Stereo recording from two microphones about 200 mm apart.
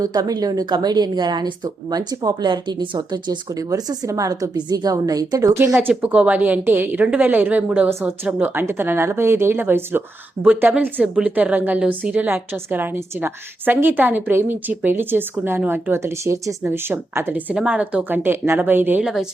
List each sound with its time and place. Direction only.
0.0 s a woman's voice: 20° right (ahead or behind)
5.7 s a woman's voice: 5° right (ahead or behind)